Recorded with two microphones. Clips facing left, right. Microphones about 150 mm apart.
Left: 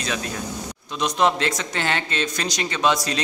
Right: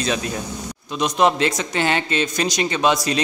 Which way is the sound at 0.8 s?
10° right (ahead or behind).